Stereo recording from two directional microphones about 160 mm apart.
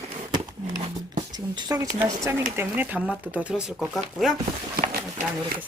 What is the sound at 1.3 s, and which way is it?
Speech, 25° right (ahead or behind).